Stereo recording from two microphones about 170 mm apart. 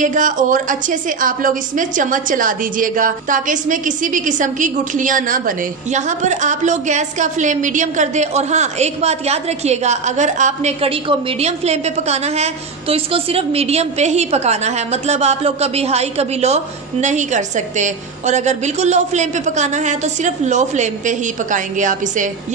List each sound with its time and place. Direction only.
0.0 s a woman's voice: 50° right (ahead or behind)